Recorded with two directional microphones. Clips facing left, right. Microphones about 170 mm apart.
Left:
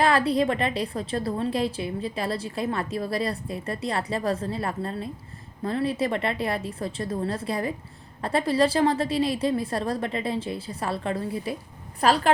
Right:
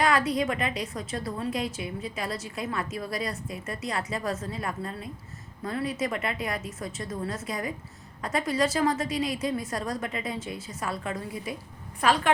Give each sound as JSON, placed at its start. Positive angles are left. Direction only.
{"t": 0.0, "sound": "a woman's voice", "side_deg": 30}